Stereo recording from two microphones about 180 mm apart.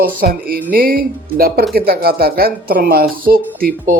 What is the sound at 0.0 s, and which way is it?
Speech, 55° right (ahead or behind).